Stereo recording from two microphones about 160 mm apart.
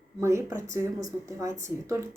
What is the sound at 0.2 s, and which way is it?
A woman's voice, 15° right (ahead or behind).